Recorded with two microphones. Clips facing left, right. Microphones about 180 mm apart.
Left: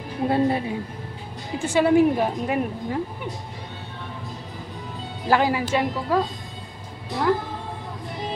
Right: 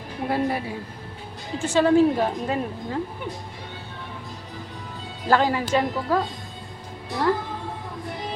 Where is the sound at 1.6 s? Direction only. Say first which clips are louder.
Even; 10° left (ahead or behind).